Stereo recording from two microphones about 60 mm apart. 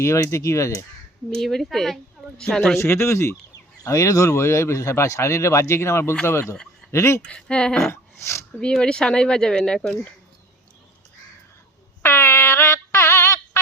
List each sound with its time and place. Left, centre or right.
0.0 s speech: left
1.3 s speech: centre
2.7 s speech: left
3.8 s speech: left
4.4 s speech: left
7.3 s speech: centre
7.9 s a sound: left
8.5 s speech: centre
12.0 s a sound: left